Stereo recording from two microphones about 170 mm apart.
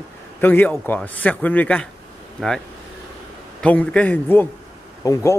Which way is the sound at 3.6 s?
5° left (ahead or behind).